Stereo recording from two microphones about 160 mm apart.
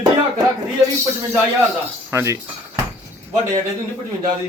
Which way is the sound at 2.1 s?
15° right (ahead or behind).